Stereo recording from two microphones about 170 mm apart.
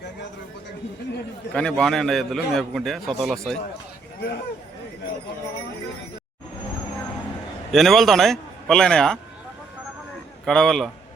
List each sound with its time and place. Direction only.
1.5 s a man's voice: 5° left (ahead or behind)
7.7 s a man's voice: centre (ahead or behind)
10.4 s a man's voice: centre (ahead or behind)